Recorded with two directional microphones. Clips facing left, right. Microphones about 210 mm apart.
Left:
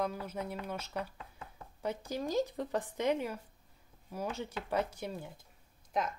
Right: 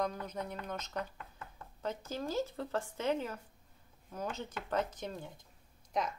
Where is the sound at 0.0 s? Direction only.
5° left (ahead or behind).